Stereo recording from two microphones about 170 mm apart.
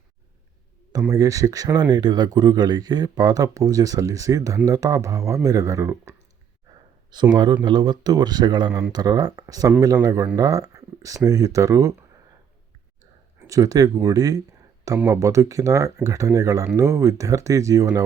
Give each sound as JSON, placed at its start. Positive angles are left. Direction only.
{"t": 0.9, "sound": "speech", "side_deg": -20}
{"t": 7.3, "sound": "speech", "side_deg": -25}
{"t": 13.5, "sound": "speech", "side_deg": -20}